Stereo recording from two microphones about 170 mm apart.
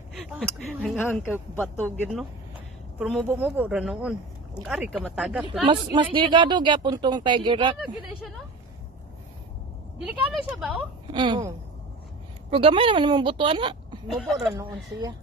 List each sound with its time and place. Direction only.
0.8 s speech: 5° left (ahead or behind)
3.3 s speech: 10° right (ahead or behind)
5.7 s a woman's voice: 30° right (ahead or behind)
7.7 s speech: centre (ahead or behind)
9.9 s speech: 5° right (ahead or behind)
11.1 s a woman's voice: 30° right (ahead or behind)
12.4 s a woman's voice: 30° right (ahead or behind)
14.0 s speech: centre (ahead or behind)
14.6 s a woman's voice: 20° right (ahead or behind)